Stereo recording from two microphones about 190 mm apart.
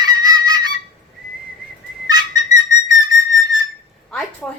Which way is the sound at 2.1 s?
20° right (ahead or behind).